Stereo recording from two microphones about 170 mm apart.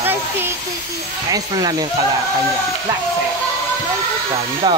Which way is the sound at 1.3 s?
25° right (ahead or behind).